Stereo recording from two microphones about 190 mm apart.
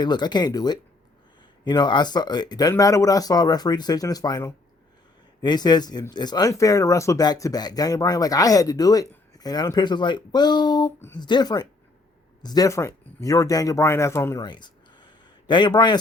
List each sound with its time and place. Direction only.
0.0 s speech: 20° left (ahead or behind)